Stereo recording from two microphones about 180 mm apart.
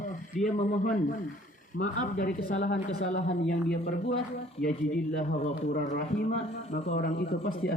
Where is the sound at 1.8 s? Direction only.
50° left (ahead or behind).